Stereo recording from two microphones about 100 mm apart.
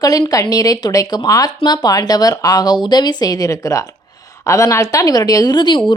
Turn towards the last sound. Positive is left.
turn(degrees=50)  # may be behind; listen again after turning